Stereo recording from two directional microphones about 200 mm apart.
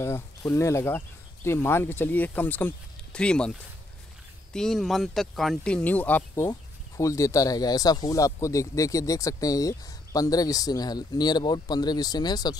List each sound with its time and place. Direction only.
0.0 s speech: 15° left (ahead or behind)
4.6 s speech: centre (ahead or behind); by 12.5 s 20° left (ahead or behind)